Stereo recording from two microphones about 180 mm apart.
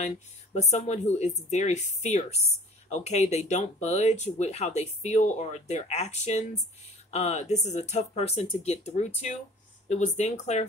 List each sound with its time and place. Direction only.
0.0 s speech: 40° left (ahead or behind)